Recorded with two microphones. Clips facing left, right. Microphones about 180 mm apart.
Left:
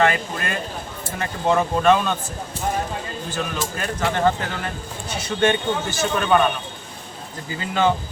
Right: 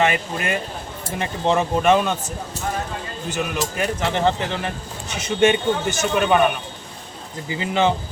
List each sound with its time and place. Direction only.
0.0 s speech: 20° right (ahead or behind)
3.3 s speech: 15° right (ahead or behind)
7.5 s speech: 20° right (ahead or behind)